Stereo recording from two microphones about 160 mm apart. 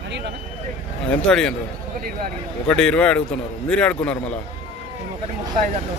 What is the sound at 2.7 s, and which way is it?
A man's voice, 5° left (ahead or behind).